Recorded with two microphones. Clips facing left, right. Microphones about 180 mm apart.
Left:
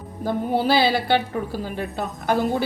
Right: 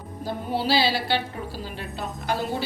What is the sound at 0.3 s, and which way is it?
A woman's voice, 50° left (ahead or behind).